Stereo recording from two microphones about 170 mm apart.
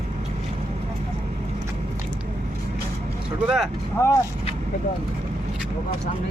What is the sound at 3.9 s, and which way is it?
Speech, 15° left (ahead or behind).